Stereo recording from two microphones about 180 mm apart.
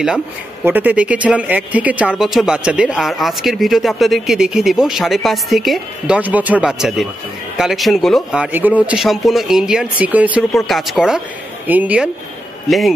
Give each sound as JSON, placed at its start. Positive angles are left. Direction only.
{"t": 0.7, "sound": "speech", "side_deg": -10}